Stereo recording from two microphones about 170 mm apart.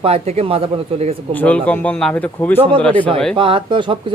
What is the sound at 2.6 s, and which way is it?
Speech, 30° right (ahead or behind).